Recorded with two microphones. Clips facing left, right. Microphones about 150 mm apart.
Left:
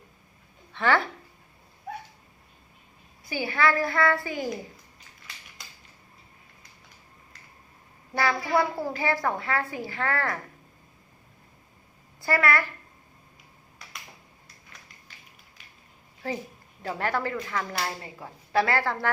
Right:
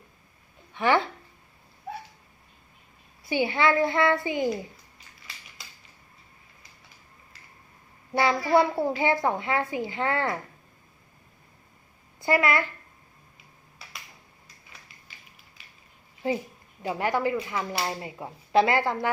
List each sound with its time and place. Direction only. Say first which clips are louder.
0.7 s speech: right 1 dB; 15° right (ahead or behind)
3.2 s a woman's voice: right 2 dB; 25° right (ahead or behind)
8.1 s a woman's voice: right 3 dB; 20° right (ahead or behind)
12.2 s a woman's voice: right 1 dB; 20° right (ahead or behind)
16.8 s speech: right 3 dB; 15° right (ahead or behind)